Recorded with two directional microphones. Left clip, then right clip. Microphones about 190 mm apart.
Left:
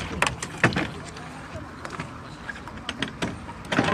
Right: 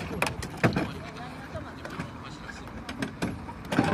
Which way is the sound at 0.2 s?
45° right (ahead or behind).